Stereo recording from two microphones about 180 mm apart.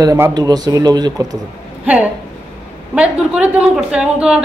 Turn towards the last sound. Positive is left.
turn(degrees=-5)  # may be behind; listen again after turning